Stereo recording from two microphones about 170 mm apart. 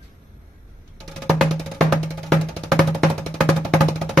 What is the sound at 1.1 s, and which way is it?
Music, centre (ahead or behind).